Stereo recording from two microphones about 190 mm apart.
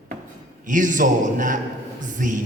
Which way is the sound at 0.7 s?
45° right (ahead or behind).